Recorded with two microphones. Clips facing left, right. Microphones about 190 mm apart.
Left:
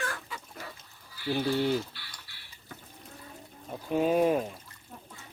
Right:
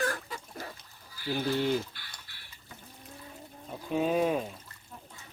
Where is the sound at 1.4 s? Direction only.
45° left (ahead or behind).